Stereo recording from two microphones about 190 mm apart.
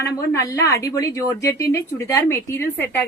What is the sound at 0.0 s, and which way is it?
A woman's voice, 15° left (ahead or behind).